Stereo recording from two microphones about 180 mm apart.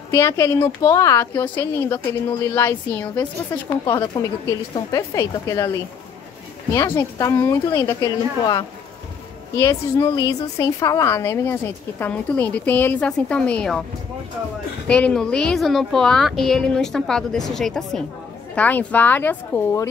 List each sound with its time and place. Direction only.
0.1 s a woman's voice: 15° left (ahead or behind)
6.7 s a woman's voice: 15° left (ahead or behind)
14.9 s a woman's voice: 5° left (ahead or behind)